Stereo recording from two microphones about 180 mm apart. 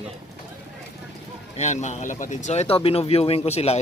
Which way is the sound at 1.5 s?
40° left (ahead or behind).